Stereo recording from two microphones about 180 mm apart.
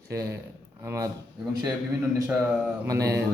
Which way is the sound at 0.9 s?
15° right (ahead or behind).